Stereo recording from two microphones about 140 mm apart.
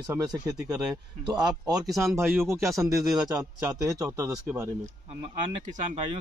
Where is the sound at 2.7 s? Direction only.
Centre (ahead or behind).